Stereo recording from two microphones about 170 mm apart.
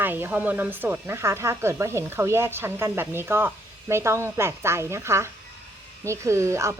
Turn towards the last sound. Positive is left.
turn(degrees=-15)  # may be behind; listen again after turning